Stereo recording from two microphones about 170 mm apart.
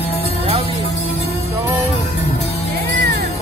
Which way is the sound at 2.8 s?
70° right (ahead or behind).